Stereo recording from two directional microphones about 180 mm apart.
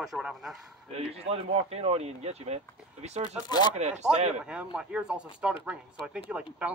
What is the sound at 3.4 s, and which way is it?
Speech, 25° left (ahead or behind).